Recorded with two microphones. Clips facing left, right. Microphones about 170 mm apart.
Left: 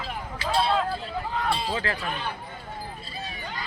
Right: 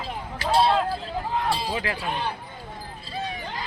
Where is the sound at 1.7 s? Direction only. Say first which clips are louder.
Even; 15° right (ahead or behind).